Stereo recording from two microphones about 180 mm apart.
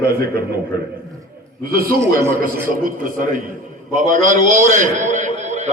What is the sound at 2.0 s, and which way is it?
Speech, 15° right (ahead or behind).